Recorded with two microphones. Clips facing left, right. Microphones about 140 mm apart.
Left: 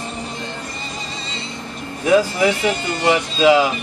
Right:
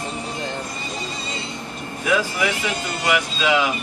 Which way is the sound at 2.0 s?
35° left (ahead or behind).